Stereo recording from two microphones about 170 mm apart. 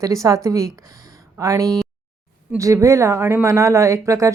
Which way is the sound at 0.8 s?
20° right (ahead or behind).